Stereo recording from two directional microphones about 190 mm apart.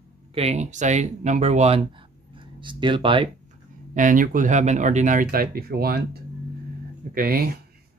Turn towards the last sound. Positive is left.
turn(degrees=-50)  # may be behind; listen again after turning